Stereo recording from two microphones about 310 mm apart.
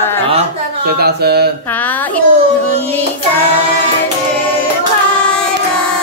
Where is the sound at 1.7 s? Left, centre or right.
Centre.